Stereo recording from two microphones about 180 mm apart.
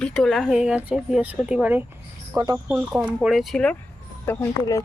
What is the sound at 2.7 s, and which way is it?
Speech, 5° right (ahead or behind).